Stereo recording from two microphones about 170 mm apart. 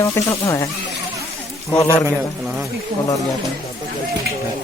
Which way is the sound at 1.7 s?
15° left (ahead or behind).